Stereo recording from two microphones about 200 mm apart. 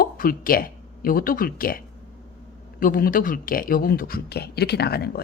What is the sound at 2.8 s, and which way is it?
Speech, 45° left (ahead or behind).